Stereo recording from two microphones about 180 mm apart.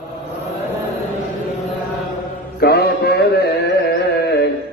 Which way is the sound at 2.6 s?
60° left (ahead or behind).